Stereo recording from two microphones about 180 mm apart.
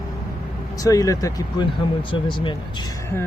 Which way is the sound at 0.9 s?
20° left (ahead or behind).